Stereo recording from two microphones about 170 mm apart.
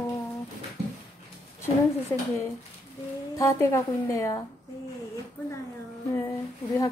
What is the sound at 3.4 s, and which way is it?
Speech, 15° left (ahead or behind).